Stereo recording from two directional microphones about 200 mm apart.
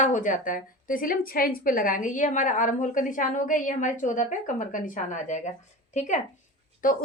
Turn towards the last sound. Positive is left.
turn(degrees=45)  # may be behind; listen again after turning